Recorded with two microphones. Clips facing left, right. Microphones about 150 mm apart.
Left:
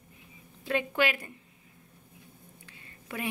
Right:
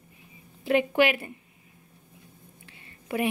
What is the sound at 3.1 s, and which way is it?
Speech, 10° right (ahead or behind).